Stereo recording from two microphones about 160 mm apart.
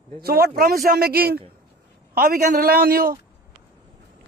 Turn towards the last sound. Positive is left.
turn(degrees=-65)  # may be behind; listen again after turning